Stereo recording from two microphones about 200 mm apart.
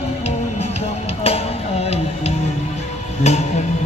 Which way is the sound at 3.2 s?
35° left (ahead or behind).